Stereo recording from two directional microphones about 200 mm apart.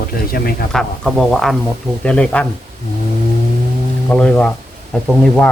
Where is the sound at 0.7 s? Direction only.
Centre (ahead or behind).